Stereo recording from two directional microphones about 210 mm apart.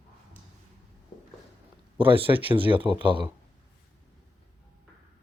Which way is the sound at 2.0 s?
25° right (ahead or behind).